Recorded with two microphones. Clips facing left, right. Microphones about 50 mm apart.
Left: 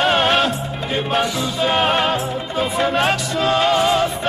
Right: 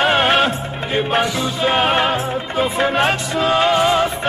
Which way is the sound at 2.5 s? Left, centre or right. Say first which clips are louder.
Right 1 dB; right.